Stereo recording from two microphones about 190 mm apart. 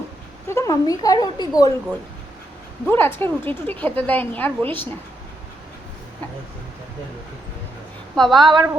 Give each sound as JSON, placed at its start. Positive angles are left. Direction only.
{"t": 0.4, "sound": "a woman's voice", "side_deg": 15}
{"t": 8.1, "sound": "a woman's voice", "side_deg": 0}
{"t": 8.4, "sound": "a woman's voice", "side_deg": -25}